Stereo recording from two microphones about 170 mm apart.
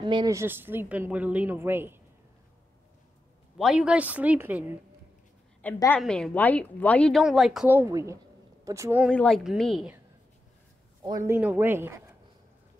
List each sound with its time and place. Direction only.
0.0 s speech: 25° right (ahead or behind)
3.5 s speech: centre (ahead or behind)
5.6 s a woman's voice: 10° left (ahead or behind); by 9.0 s 15° right (ahead or behind)
9.1 s speech: 5° left (ahead or behind)
11.1 s speech: 15° right (ahead or behind)